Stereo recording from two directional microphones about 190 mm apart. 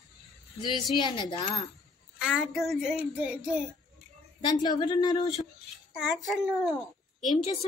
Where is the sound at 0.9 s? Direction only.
25° left (ahead or behind).